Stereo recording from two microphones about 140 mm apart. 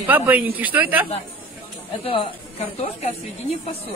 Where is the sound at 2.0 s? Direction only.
40° left (ahead or behind).